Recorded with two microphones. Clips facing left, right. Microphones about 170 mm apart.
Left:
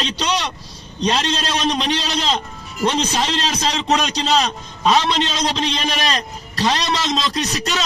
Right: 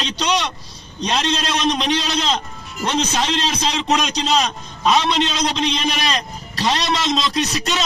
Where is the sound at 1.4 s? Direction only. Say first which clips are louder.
Even; 35° left (ahead or behind).